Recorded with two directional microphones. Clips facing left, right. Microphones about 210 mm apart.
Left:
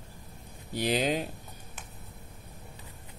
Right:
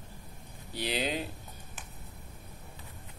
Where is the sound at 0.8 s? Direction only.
50° left (ahead or behind).